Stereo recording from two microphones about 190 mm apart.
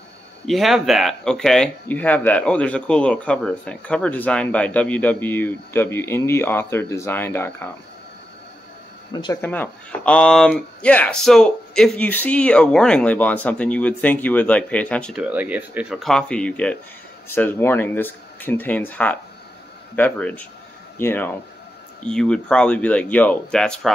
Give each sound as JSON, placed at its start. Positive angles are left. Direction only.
{"t": 0.5, "sound": "speech", "side_deg": 0}
{"t": 9.1, "sound": "speech", "side_deg": 20}
{"t": 9.4, "sound": "speech", "side_deg": 10}
{"t": 15.2, "sound": "speech", "side_deg": -10}